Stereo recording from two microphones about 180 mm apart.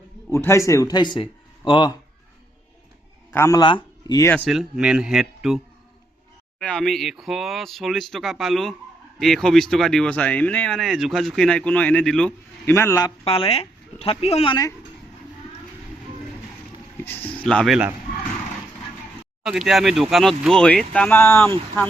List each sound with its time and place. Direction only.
0.3 s a man's voice: 15° left (ahead or behind)
3.3 s speech: 15° left (ahead or behind)
4.4 s speech: 5° right (ahead or behind); by 13.1 s 20° left (ahead or behind)
13.2 s speech: 30° left (ahead or behind)
17.0 s a sound: 10° left (ahead or behind)
19.4 s speech: centre (ahead or behind)